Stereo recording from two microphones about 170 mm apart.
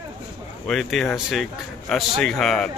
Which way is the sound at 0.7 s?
Centre (ahead or behind).